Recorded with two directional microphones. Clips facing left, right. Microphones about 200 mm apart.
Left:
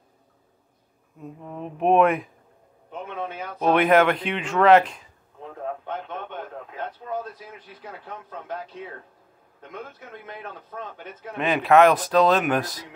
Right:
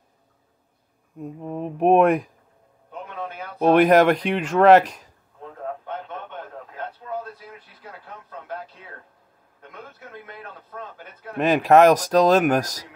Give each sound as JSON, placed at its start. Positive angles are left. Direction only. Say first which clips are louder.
{"t": 1.5, "sound": "speech", "louder": "right 3 dB", "side_deg": -45}
{"t": 3.6, "sound": "speech", "louder": "right 3 dB", "side_deg": -40}
{"t": 11.4, "sound": "speech", "louder": "right 2 dB", "side_deg": -40}